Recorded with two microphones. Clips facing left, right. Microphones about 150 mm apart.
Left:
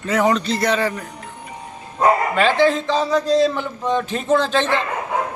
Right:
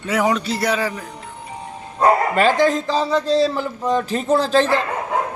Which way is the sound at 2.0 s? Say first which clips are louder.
Right 1 dB; 40° right (ahead or behind).